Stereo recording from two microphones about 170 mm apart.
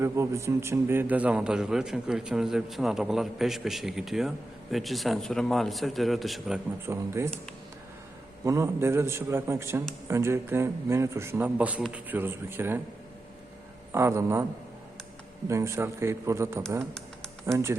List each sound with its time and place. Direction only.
0.0 s a man's voice: 15° right (ahead or behind); by 6.6 s centre (ahead or behind)
6.8 s a man's voice: 15° right (ahead or behind)
8.4 s a man's voice: 15° right (ahead or behind)
13.9 s a man's voice: 15° right (ahead or behind)
15.4 s a man's voice: 15° right (ahead or behind)